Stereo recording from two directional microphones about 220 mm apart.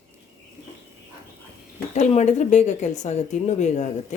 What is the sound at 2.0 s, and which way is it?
A woman's voice, 30° left (ahead or behind).